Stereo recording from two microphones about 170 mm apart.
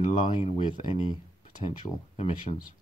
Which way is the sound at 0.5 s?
30° left (ahead or behind).